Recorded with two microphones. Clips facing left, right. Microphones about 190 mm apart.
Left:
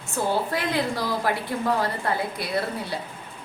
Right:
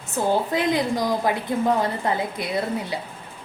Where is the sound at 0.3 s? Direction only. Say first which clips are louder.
Right 5 dB; 20° right (ahead or behind).